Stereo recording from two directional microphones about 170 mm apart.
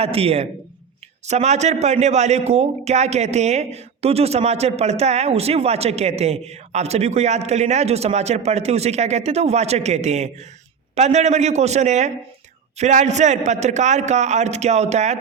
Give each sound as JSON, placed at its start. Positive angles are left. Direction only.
{"t": 0.0, "sound": "a man's voice", "side_deg": -35}